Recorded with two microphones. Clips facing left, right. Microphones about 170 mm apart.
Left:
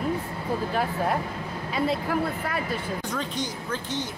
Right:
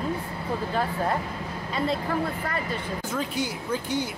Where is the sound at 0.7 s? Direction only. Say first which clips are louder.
Right 1 dB; 5° left (ahead or behind).